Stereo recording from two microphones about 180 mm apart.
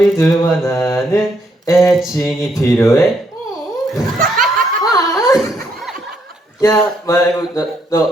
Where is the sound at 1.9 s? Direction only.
Centre (ahead or behind).